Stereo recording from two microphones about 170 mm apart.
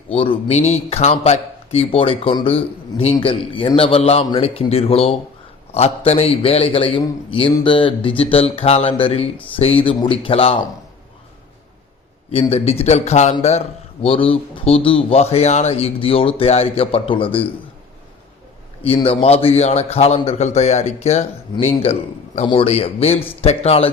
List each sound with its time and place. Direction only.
0.1 s speech: 35° left (ahead or behind)
12.3 s speech: 35° left (ahead or behind)
19.0 s speech: 35° left (ahead or behind)